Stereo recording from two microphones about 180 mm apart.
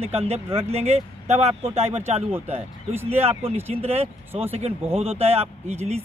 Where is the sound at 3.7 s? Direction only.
35° right (ahead or behind).